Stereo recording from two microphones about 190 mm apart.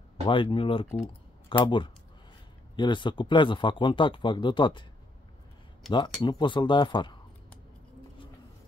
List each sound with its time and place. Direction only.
0.3 s speech: 25° left (ahead or behind)
5.9 s speech: 25° left (ahead or behind)